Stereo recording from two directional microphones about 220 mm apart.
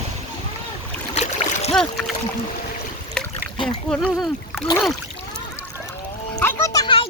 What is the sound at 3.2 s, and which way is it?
Boat, 5° left (ahead or behind).